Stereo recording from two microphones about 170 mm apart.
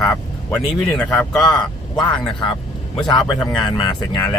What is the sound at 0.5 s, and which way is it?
Speech, 5° left (ahead or behind).